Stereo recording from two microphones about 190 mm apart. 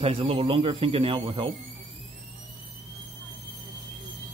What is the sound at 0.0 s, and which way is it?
Speech, 30° right (ahead or behind).